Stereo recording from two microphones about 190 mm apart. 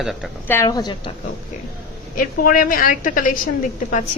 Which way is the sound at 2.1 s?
45° left (ahead or behind).